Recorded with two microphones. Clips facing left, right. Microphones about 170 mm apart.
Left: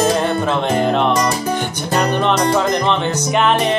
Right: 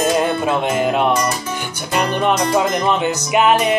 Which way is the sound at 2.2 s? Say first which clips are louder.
Left 1 dB; 10° right (ahead or behind).